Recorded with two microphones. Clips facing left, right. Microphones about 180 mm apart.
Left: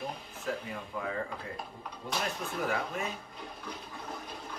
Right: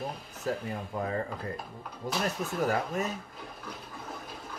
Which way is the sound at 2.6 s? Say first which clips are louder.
Right 4 dB; 40° right (ahead or behind).